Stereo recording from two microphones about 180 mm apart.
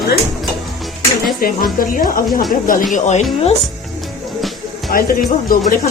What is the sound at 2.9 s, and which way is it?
Speech, 40° left (ahead or behind).